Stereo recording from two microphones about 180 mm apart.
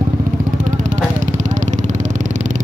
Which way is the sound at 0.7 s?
45° right (ahead or behind).